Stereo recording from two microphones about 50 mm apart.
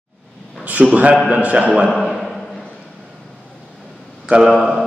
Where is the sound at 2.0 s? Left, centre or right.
Centre.